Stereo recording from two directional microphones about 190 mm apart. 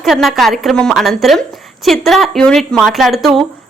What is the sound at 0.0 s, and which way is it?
A woman's voice, centre (ahead or behind).